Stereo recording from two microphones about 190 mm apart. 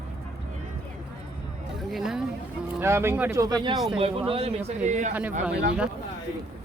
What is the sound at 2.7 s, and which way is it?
Speech, 15° right (ahead or behind).